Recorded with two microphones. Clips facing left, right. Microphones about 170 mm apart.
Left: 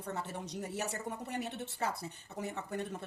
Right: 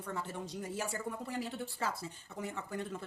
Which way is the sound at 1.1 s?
25° left (ahead or behind).